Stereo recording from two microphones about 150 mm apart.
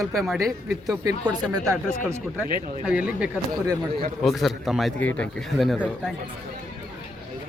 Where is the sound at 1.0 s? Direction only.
25° right (ahead or behind).